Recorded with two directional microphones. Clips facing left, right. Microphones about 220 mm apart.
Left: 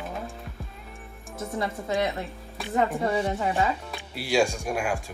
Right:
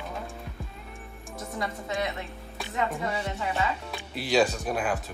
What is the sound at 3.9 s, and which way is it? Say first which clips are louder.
Speech: right 3 dB; 10° left (ahead or behind).